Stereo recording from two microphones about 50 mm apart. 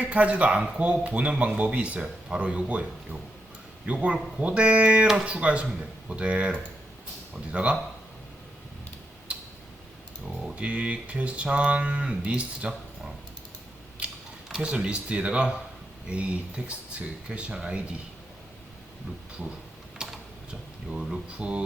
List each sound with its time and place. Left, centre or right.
0.0 s speech: right
3.8 s speech: right
10.4 s speech: right
14.6 s speech: right
20.0 s typing: centre
20.5 s speech: centre